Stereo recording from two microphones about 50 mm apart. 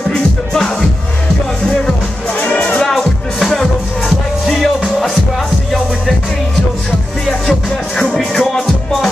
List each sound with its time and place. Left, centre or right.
0.5 s music: centre
2.4 s music: left
2.8 s music: centre
8.2 s music: centre